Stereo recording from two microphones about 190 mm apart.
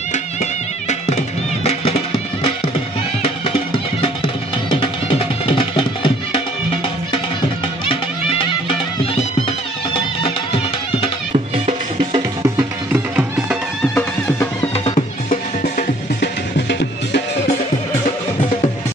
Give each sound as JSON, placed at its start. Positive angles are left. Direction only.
{"t": 0.1, "sound": "music", "side_deg": 40}
{"t": 3.4, "sound": "music", "side_deg": 30}
{"t": 7.9, "sound": "music", "side_deg": 30}
{"t": 10.2, "sound": "music", "side_deg": 30}
{"t": 11.3, "sound": "music", "side_deg": -30}
{"t": 12.5, "sound": "music", "side_deg": -10}
{"t": 14.9, "sound": "music", "side_deg": 35}
{"t": 16.2, "sound": "music", "side_deg": 65}